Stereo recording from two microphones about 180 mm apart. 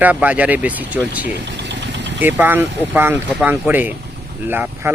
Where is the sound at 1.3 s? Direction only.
70° right (ahead or behind).